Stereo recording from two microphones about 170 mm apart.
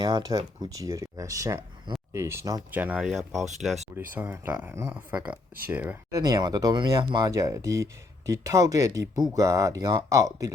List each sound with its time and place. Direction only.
0.0 s speech: 25° right (ahead or behind); by 3.8 s centre (ahead or behind)
4.1 s speech: 10° right (ahead or behind)